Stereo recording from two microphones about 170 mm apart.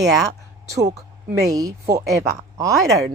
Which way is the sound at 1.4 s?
20° right (ahead or behind).